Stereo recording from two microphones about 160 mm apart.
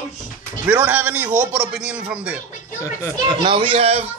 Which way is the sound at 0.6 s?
10° right (ahead or behind).